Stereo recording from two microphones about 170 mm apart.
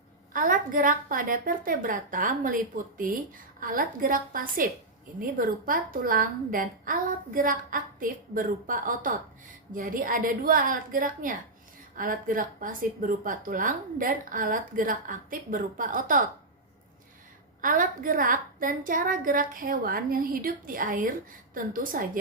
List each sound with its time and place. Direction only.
0.3 s a woman's voice: 55° right (ahead or behind)
17.6 s a woman's voice: 55° right (ahead or behind)